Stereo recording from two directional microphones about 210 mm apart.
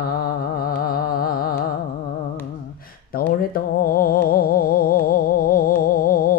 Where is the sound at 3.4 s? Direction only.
45° left (ahead or behind).